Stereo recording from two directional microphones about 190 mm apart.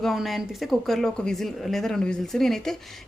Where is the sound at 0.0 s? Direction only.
Centre (ahead or behind).